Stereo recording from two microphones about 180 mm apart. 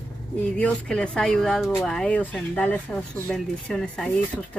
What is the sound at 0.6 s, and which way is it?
Speech, 5° left (ahead or behind).